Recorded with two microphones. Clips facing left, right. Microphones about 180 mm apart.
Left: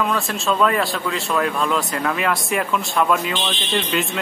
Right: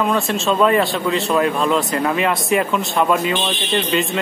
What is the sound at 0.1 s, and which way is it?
Speech, 25° right (ahead or behind).